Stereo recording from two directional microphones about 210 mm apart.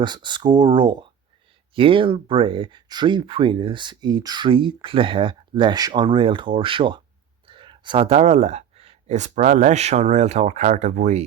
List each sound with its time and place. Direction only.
0.0 s speech: 20° right (ahead or behind)